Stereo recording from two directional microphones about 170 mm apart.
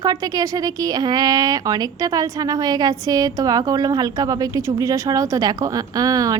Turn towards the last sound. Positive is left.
turn(degrees=-20)  # may be behind; listen again after turning